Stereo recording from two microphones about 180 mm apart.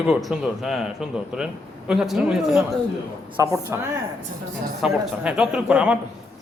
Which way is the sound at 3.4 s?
20° right (ahead or behind).